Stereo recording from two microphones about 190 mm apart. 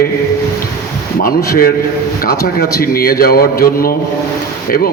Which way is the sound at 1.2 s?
50° left (ahead or behind).